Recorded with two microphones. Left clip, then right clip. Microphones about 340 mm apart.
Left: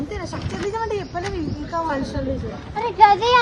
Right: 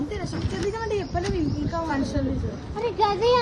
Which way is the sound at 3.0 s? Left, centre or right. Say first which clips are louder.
Left 8 dB; left.